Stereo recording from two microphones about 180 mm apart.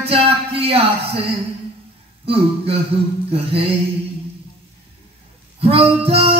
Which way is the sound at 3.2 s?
35° right (ahead or behind).